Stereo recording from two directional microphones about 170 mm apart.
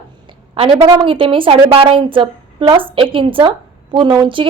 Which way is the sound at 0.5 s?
35° right (ahead or behind).